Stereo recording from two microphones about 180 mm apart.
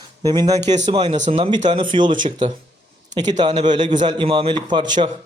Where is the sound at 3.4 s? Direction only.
25° right (ahead or behind).